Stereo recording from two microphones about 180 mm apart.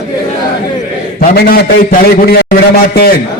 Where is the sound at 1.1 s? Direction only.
55° left (ahead or behind).